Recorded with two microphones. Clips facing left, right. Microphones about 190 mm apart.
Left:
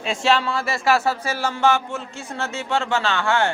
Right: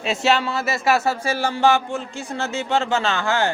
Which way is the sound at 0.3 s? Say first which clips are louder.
Even; 25° right (ahead or behind).